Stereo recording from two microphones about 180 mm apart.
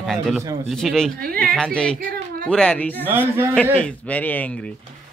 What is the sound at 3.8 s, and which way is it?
Speech, 10° left (ahead or behind).